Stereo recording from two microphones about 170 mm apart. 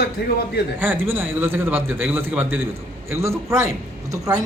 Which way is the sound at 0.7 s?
10° right (ahead or behind).